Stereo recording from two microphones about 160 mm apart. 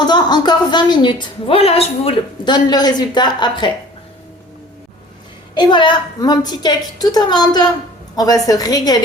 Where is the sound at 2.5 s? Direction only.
25° left (ahead or behind).